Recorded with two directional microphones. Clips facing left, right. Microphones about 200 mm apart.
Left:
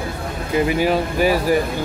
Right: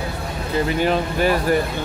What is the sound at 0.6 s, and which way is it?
Speech, 10° left (ahead or behind).